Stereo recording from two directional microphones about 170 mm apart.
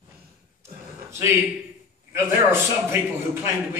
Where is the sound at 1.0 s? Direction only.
15° right (ahead or behind).